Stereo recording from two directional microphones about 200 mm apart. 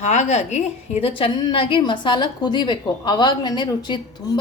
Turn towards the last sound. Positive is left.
turn(degrees=20)  # may be behind; listen again after turning